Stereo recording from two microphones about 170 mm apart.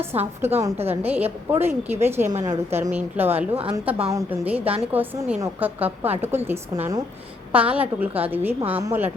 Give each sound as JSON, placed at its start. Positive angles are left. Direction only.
{"t": 0.1, "sound": "a woman's voice", "side_deg": -40}
{"t": 0.6, "sound": "a woman's voice", "side_deg": -15}
{"t": 7.5, "sound": "a woman's voice", "side_deg": -10}